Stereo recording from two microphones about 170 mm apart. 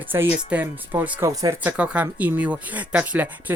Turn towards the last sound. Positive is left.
turn(degrees=-10)  # may be behind; listen again after turning